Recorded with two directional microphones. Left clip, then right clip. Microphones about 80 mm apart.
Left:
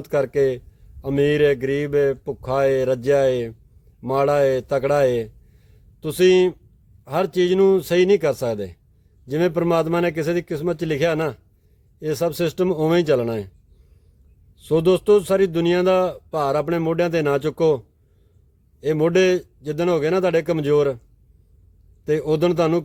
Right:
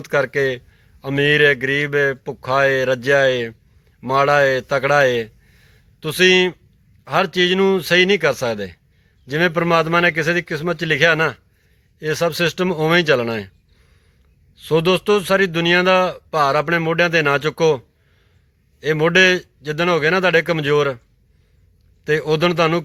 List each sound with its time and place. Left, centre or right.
0.0 s speech: left
14.5 s speech: left
22.0 s speech: left